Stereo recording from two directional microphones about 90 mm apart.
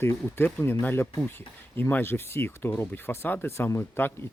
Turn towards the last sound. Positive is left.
turn(degrees=25)  # may be behind; listen again after turning